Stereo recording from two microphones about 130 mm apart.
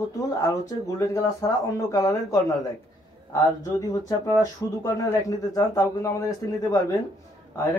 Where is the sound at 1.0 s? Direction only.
25° left (ahead or behind).